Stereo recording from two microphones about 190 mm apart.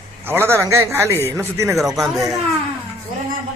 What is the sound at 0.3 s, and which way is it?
Speech, 10° right (ahead or behind).